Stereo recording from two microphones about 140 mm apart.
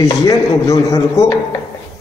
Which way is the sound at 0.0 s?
25° left (ahead or behind).